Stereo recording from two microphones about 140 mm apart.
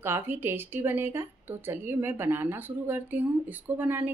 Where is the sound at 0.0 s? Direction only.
15° right (ahead or behind).